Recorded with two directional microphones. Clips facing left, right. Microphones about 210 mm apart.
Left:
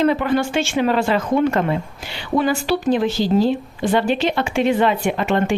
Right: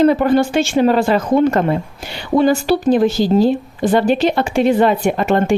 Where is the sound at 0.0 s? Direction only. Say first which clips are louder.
Right 5 dB; 40° right (ahead or behind).